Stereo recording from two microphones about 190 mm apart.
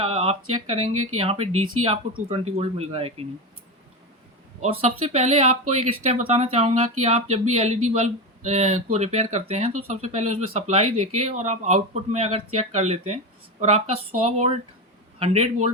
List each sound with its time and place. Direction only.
0.0 s a sound: 30° right (ahead or behind)
0.7 s speech: 30° right (ahead or behind)
4.6 s speech: 30° right (ahead or behind)